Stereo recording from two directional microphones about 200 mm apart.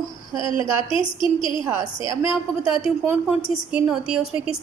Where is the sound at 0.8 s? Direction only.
25° left (ahead or behind).